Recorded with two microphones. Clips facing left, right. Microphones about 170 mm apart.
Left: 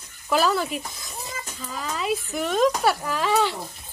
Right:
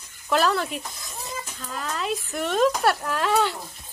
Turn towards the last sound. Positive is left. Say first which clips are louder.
# even
turn(degrees=0)  # may be behind; listen again after turning